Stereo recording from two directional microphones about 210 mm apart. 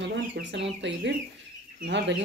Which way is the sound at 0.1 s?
55° right (ahead or behind).